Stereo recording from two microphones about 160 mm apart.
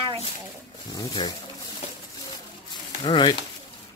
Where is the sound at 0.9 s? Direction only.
25° left (ahead or behind).